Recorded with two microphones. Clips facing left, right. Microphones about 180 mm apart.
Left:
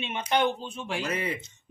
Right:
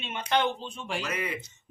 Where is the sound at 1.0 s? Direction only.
30° left (ahead or behind).